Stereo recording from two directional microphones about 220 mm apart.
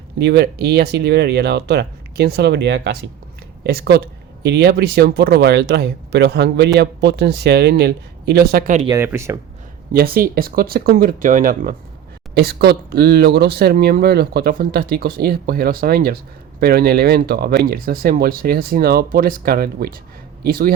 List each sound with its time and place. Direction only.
0.2 s speech: 50° right (ahead or behind)
8.9 s speech: 10° right (ahead or behind)
9.9 s speech: 45° right (ahead or behind)